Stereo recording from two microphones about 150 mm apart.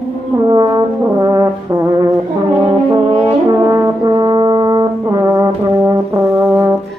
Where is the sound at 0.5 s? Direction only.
30° right (ahead or behind).